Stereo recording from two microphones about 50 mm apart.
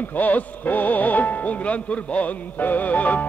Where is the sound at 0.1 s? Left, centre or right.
Left.